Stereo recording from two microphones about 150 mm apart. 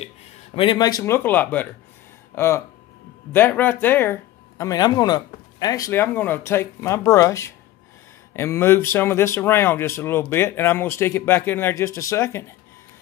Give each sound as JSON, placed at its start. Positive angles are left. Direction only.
{"t": 0.6, "sound": "speech", "side_deg": 30}